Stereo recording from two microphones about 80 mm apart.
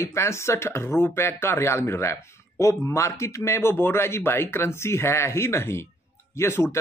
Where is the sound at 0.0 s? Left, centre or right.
Left.